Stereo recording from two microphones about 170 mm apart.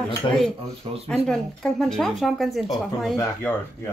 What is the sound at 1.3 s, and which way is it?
Speech, centre (ahead or behind).